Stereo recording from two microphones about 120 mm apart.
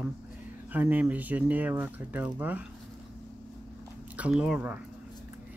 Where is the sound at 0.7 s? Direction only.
15° right (ahead or behind).